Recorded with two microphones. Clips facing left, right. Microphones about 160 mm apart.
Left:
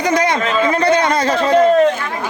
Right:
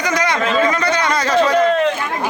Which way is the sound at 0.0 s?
30° left (ahead or behind).